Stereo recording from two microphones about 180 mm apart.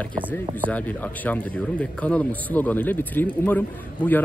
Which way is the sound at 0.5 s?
10° left (ahead or behind).